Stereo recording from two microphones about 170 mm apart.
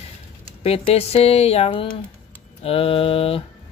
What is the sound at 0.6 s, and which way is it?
Speech, 35° left (ahead or behind).